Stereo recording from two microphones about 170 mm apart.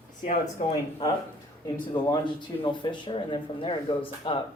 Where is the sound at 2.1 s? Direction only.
30° left (ahead or behind).